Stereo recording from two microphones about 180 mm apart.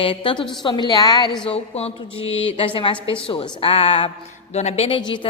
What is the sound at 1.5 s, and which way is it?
A woman's voice, 35° left (ahead or behind).